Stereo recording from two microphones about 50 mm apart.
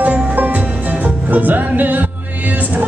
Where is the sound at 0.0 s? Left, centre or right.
Right.